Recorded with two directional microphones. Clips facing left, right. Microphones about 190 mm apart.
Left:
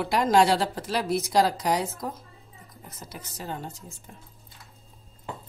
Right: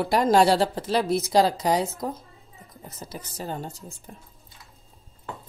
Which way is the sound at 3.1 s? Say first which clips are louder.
Right 3 dB; 35° right (ahead or behind).